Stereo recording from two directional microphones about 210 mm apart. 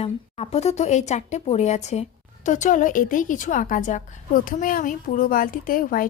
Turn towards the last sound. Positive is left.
turn(degrees=40)  # may be behind; listen again after turning